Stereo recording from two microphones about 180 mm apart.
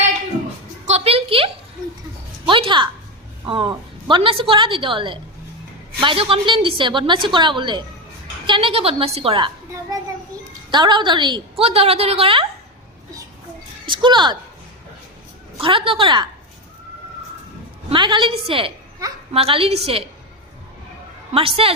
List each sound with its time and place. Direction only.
0.9 s a sound: 35° right (ahead or behind)
2.5 s music: 25° right (ahead or behind)
3.4 s a woman's voice: 25° right (ahead or behind)
10.7 s a woman's voice: 25° right (ahead or behind)
13.8 s speech: 25° right (ahead or behind)
15.6 s a woman's voice: 30° right (ahead or behind)
17.8 s a woman's voice: 25° right (ahead or behind)
21.3 s a woman's voice: 30° right (ahead or behind)